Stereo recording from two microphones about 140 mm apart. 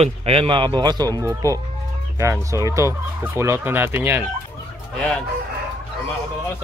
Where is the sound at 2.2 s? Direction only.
20° right (ahead or behind).